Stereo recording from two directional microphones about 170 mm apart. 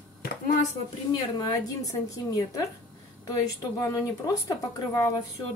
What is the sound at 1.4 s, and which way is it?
A woman's voice, 20° left (ahead or behind).